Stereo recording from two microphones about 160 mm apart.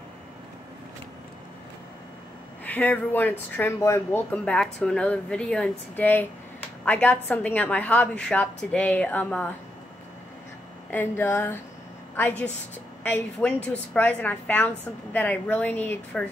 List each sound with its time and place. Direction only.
2.6 s speech: 10° left (ahead or behind)
10.9 s speech: 15° left (ahead or behind)